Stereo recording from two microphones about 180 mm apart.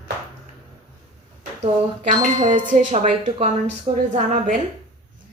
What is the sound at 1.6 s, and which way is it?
A woman's voice, 45° right (ahead or behind).